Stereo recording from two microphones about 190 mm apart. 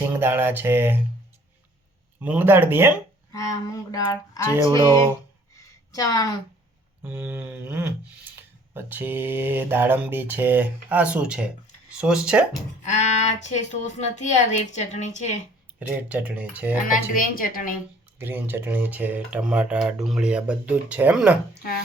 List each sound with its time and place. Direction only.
0.1 s speech: 10° right (ahead or behind)
2.2 s speech: 10° right (ahead or behind)
3.3 s speech: 15° left (ahead or behind)
4.6 s speech: 25° right (ahead or behind)
5.9 s a woman's voice: 20° left (ahead or behind)
7.0 s speech: 10° right (ahead or behind)
12.8 s speech: 40° left (ahead or behind)
15.8 s speech: 10° right (ahead or behind)
16.9 s a woman's voice: 45° left (ahead or behind)
18.2 s speech: 10° right (ahead or behind)